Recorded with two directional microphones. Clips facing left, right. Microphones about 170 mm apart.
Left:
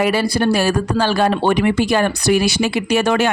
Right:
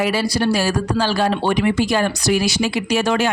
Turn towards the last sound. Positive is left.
turn(degrees=60)  # may be behind; listen again after turning